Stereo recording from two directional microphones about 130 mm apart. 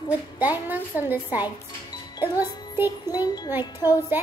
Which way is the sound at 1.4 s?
30° left (ahead or behind).